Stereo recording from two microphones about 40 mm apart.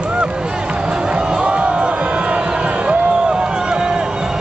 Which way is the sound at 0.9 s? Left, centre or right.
Right.